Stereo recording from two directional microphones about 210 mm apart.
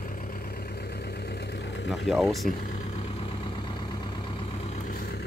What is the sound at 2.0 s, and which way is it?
Speech, centre (ahead or behind).